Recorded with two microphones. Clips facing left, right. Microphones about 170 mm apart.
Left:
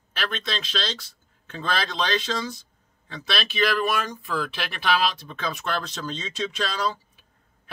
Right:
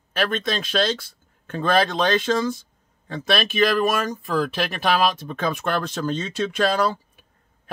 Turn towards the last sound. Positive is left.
turn(degrees=-50)  # may be behind; listen again after turning